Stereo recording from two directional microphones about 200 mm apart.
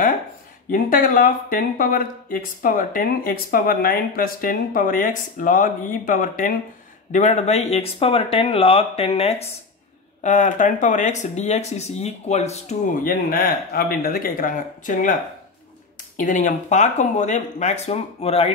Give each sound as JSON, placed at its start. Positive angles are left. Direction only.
{"t": 0.7, "sound": "speech", "side_deg": 45}
{"t": 16.2, "sound": "speech", "side_deg": 40}